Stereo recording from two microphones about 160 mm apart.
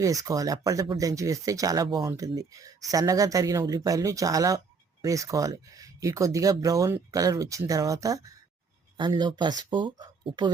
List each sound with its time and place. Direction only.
0.0 s speech: 20° right (ahead or behind)